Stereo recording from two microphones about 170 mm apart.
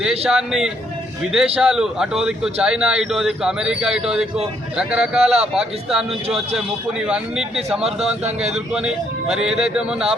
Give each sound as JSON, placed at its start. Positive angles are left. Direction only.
{"t": 0.3, "sound": "a man's voice", "side_deg": -5}